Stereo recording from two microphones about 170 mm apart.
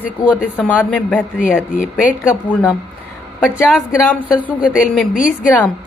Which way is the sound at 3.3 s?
5° right (ahead or behind).